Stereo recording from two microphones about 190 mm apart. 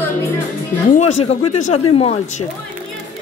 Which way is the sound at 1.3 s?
35° left (ahead or behind).